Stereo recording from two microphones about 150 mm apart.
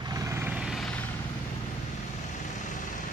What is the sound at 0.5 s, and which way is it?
Vehicle, 5° right (ahead or behind).